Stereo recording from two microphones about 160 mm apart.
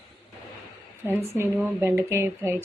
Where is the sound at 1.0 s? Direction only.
15° right (ahead or behind).